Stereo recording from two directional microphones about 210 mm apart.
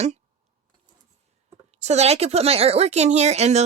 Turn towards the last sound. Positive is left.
turn(degrees=-30)  # may be behind; listen again after turning